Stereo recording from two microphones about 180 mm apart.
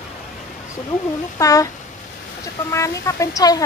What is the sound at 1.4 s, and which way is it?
Speech, 20° left (ahead or behind).